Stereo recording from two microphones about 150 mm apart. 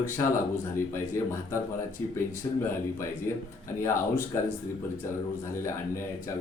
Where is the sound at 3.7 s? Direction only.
20° left (ahead or behind).